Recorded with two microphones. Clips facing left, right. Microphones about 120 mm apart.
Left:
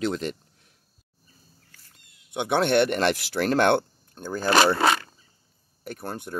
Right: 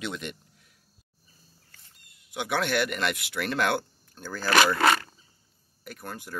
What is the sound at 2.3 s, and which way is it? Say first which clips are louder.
Speech: left 6 dB; 25° left (ahead or behind).